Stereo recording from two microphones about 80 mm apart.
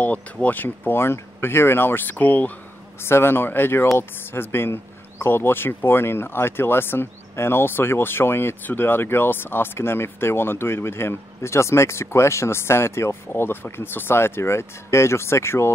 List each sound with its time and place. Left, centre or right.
0.0 s speech: left
3.0 s speech: left